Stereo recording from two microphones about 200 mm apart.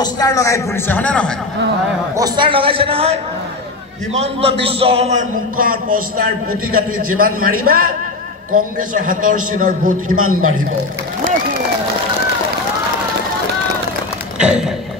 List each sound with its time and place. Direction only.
0.0 s a man's voice: 20° left (ahead or behind)
2.1 s a man's voice: 20° right (ahead or behind); by 5.9 s 45° right (ahead or behind)
7.2 s a man's voice: 45° right (ahead or behind)
10.0 s a man's voice: 90° right
14.4 s speech: 5° right (ahead or behind)